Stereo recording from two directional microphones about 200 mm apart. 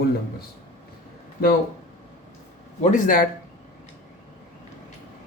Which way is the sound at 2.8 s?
40° left (ahead or behind).